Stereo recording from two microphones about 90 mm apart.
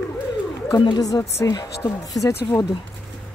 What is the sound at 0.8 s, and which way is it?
A woman's voice, 55° left (ahead or behind).